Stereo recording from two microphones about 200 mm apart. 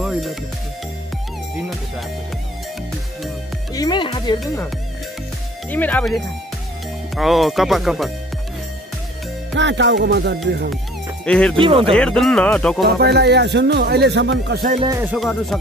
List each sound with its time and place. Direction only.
0.0 s music: centre (ahead or behind)
3.7 s music: 20° left (ahead or behind)
5.7 s speech: 10° left (ahead or behind)
9.6 s speech: 65° right (ahead or behind)
11.2 s speech: 5° left (ahead or behind)
11.5 s speech: 25° right (ahead or behind)
11.9 s speech: 5° left (ahead or behind)
12.8 s speech: 55° right (ahead or behind)
14.9 s music: 10° right (ahead or behind)
15.1 s speech: centre (ahead or behind)